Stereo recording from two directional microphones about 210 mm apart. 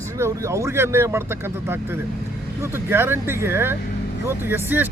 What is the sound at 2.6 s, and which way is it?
Speech, 10° right (ahead or behind).